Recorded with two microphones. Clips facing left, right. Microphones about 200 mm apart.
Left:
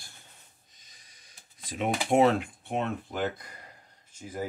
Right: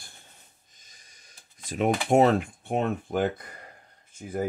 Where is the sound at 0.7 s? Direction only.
45° right (ahead or behind).